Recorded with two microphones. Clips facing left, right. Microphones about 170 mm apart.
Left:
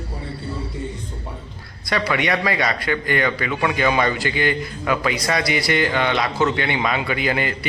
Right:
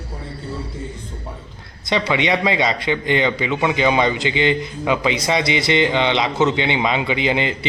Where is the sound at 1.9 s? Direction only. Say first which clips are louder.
Right 2 dB; 20° right (ahead or behind).